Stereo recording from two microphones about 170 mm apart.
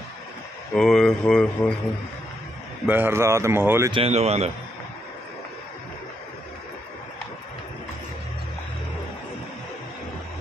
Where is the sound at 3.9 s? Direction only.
35° right (ahead or behind).